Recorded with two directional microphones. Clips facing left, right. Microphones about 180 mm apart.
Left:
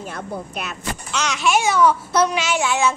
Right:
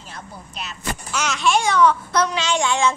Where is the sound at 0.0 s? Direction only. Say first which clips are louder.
Left 9 dB; 55° left (ahead or behind).